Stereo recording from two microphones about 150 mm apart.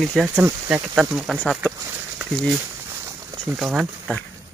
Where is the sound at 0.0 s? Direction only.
5° right (ahead or behind).